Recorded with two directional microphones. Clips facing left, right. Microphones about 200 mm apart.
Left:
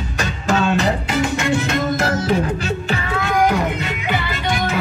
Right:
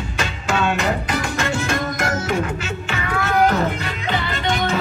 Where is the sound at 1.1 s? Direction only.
20° left (ahead or behind).